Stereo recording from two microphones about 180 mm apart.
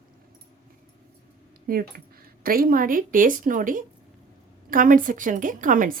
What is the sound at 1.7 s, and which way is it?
Speech, 55° right (ahead or behind).